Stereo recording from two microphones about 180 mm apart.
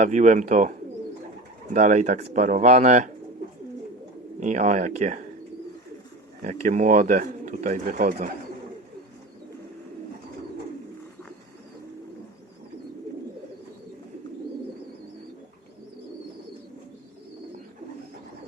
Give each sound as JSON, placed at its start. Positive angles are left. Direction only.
{"t": 0.0, "sound": "speech", "side_deg": -45}
{"t": 4.4, "sound": "speech", "side_deg": -45}
{"t": 6.4, "sound": "speech", "side_deg": -45}